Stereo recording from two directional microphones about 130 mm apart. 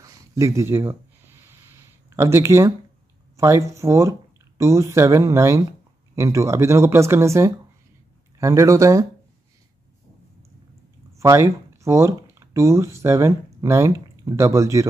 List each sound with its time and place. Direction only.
0.0 s speech: 20° right (ahead or behind)
2.0 s speech: 20° right (ahead or behind)
11.1 s speech: 20° right (ahead or behind)